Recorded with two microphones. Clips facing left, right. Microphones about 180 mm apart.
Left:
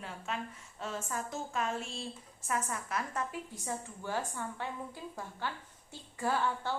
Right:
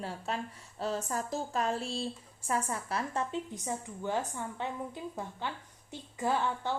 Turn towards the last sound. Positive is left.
turn(degrees=-20)  # may be behind; listen again after turning